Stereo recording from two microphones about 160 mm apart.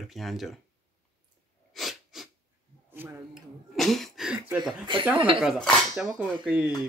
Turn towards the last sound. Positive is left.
turn(degrees=-10)  # may be behind; listen again after turning